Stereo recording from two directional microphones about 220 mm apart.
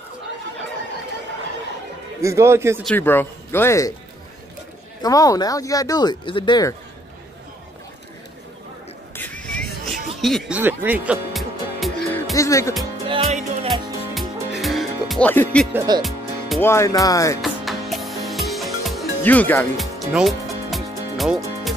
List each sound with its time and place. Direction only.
2.2 s a man's voice: 10° right (ahead or behind)
2.8 s speech: 5° left (ahead or behind)
5.0 s speech: 15° left (ahead or behind)
9.1 s music: 5° left (ahead or behind)
12.4 s speech: 15° left (ahead or behind)
13.0 s music: 25° right (ahead or behind)
13.7 s music: centre (ahead or behind)
15.7 s a man's voice: 15° right (ahead or behind)
16.0 s music: centre (ahead or behind)
16.6 s speech: 15° left (ahead or behind)
17.4 s music: centre (ahead or behind)